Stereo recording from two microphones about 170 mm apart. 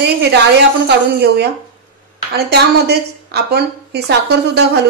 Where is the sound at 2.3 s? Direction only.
70° right (ahead or behind).